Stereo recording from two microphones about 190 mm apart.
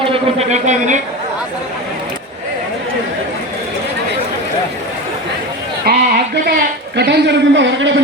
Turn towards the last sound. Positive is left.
turn(degrees=-75)  # may be behind; listen again after turning